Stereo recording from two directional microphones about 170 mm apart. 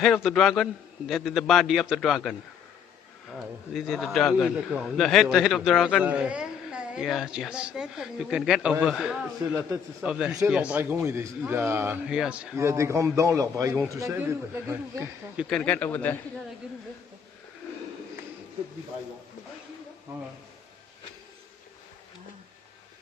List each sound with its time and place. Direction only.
0.0 s a man's voice: centre (ahead or behind)
3.3 s a man's voice: centre (ahead or behind)
12.5 s a man's voice: 15° right (ahead or behind)
15.4 s speech: 5° left (ahead or behind)